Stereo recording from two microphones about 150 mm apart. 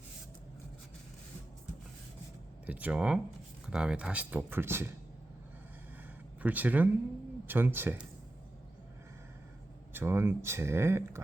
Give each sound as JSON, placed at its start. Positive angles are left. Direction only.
{"t": 2.6, "sound": "speech", "side_deg": -10}
{"t": 6.4, "sound": "speech", "side_deg": -10}
{"t": 9.9, "sound": "speech", "side_deg": -15}